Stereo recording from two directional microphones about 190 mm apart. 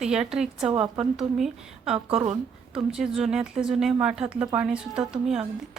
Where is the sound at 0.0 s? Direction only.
5° right (ahead or behind).